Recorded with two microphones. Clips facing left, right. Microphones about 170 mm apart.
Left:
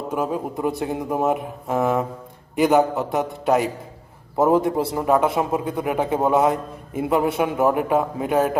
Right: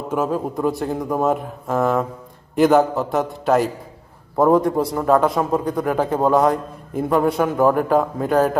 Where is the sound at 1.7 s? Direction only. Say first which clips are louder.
Right 2 dB; 15° left (ahead or behind).